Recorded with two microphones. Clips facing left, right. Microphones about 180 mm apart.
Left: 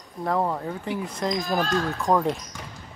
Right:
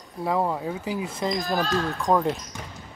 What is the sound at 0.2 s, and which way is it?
Speech, 5° right (ahead or behind).